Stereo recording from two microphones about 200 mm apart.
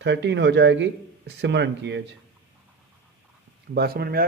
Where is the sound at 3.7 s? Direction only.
50° right (ahead or behind).